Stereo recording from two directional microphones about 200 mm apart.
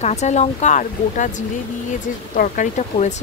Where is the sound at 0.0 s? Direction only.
35° left (ahead or behind).